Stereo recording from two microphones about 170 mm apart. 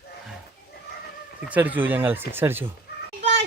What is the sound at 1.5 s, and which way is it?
Speech, 10° right (ahead or behind).